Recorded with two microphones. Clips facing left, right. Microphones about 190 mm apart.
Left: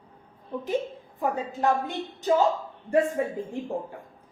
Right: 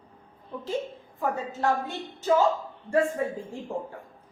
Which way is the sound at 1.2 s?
15° left (ahead or behind).